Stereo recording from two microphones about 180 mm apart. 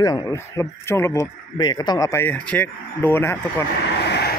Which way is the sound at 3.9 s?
65° left (ahead or behind).